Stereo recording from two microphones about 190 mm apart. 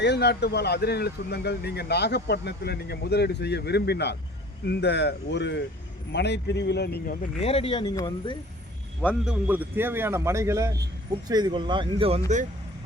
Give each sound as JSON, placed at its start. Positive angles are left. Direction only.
{"t": 0.0, "sound": "speech", "side_deg": 65}
{"t": 7.4, "sound": "speech", "side_deg": 30}
{"t": 9.0, "sound": "a man's voice", "side_deg": -5}